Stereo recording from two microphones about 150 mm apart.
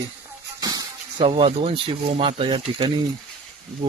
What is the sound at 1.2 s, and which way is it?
Speech, 40° right (ahead or behind).